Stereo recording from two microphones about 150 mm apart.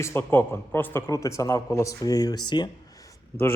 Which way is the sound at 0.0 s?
15° left (ahead or behind).